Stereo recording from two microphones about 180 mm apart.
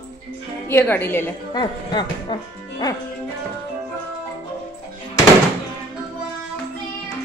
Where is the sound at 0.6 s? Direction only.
10° left (ahead or behind).